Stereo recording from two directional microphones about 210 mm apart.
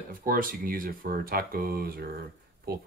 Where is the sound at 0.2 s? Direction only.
40° right (ahead or behind).